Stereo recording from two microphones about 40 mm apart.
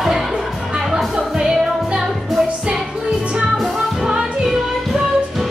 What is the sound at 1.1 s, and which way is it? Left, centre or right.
Music, centre.